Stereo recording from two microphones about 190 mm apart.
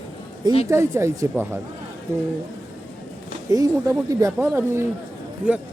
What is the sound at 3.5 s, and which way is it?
Speech, 15° right (ahead or behind).